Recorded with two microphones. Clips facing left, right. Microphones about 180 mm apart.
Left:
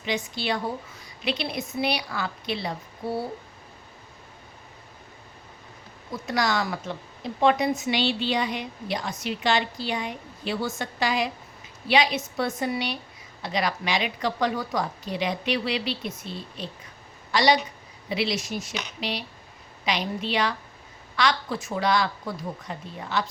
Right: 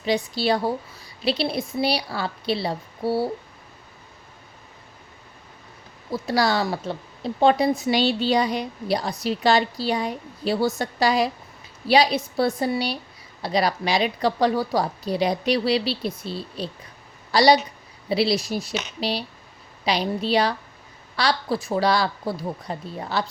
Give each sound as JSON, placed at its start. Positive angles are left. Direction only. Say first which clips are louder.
{"t": 0.0, "sound": "a woman's voice", "louder": "right 6 dB", "side_deg": -35}
{"t": 6.1, "sound": "a woman's voice", "louder": "right 4 dB", "side_deg": -30}